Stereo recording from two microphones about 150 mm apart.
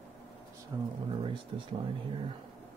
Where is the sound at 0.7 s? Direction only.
25° right (ahead or behind).